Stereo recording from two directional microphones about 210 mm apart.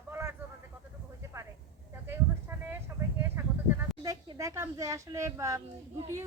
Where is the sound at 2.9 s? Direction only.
15° right (ahead or behind).